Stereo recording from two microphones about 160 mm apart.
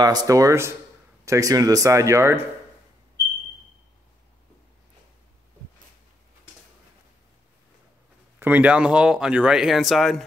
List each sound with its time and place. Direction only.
0.0 s speech: 25° right (ahead or behind)
8.4 s speech: 10° right (ahead or behind)